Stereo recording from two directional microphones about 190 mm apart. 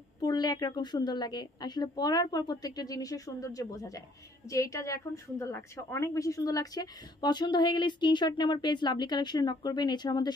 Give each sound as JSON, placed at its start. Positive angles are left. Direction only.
{"t": 0.2, "sound": "a woman's voice", "side_deg": 20}